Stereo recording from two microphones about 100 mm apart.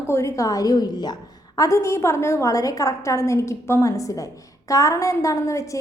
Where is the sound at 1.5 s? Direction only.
30° left (ahead or behind).